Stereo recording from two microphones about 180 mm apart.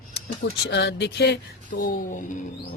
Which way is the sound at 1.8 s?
50° left (ahead or behind).